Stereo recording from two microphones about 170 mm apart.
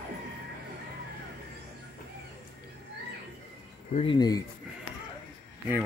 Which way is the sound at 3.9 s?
25° left (ahead or behind).